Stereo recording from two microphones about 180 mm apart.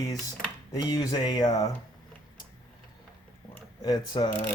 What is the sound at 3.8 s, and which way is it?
Speech, 25° left (ahead or behind).